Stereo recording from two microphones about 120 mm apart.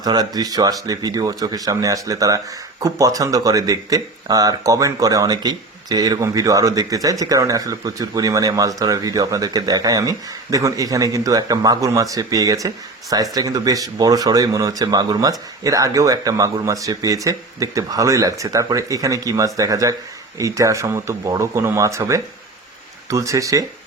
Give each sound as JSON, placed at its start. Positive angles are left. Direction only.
{"t": 0.0, "sound": "speech", "side_deg": -35}